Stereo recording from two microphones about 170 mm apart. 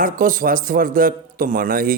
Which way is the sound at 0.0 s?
55° right (ahead or behind).